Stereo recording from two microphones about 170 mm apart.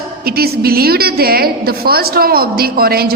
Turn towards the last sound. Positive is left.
turn(degrees=-65)  # may be behind; listen again after turning